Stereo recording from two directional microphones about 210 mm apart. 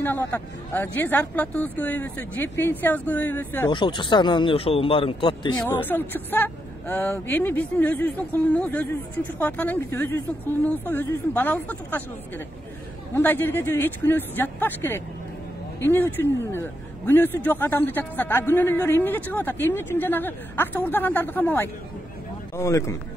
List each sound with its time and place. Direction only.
0.0 s speech: 10° left (ahead or behind)
3.7 s speech: 20° left (ahead or behind)
5.7 s speech: 10° left (ahead or behind)